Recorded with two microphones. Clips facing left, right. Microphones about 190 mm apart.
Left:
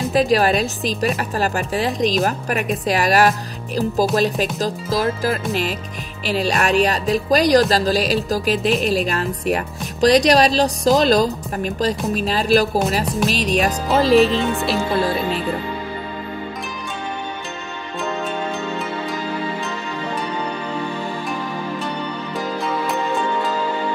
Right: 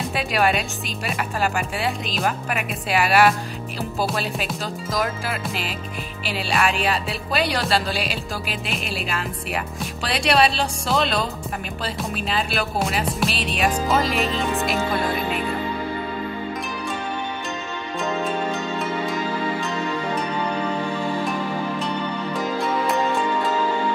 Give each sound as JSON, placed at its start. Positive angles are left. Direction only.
{"t": 0.1, "sound": "speech", "side_deg": 35}